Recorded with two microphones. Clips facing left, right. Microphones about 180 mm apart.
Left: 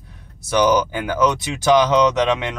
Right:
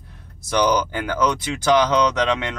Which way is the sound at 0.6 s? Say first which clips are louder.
Left 3 dB; 10° left (ahead or behind).